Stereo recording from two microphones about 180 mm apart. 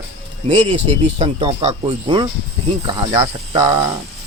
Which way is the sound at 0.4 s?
30° right (ahead or behind).